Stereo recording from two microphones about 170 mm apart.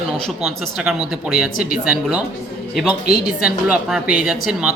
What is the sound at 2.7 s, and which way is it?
A man's voice, centre (ahead or behind).